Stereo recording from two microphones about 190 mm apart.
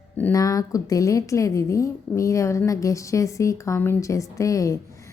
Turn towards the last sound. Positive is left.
turn(degrees=15)  # may be behind; listen again after turning